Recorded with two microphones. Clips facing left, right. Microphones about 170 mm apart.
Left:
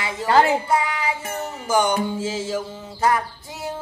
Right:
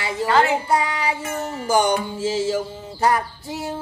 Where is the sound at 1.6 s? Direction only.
35° right (ahead or behind).